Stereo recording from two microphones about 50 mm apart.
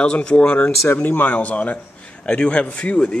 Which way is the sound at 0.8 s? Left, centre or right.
Left.